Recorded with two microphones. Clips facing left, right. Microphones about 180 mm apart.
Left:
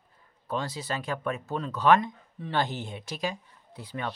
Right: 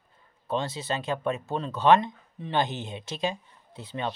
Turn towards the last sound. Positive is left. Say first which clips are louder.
# right 2 dB
turn(degrees=-25)  # may be behind; listen again after turning